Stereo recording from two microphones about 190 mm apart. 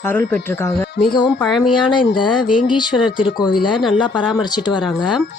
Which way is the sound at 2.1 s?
25° left (ahead or behind).